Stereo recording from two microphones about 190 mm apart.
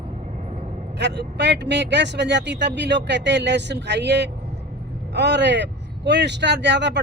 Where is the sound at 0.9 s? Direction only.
65° right (ahead or behind).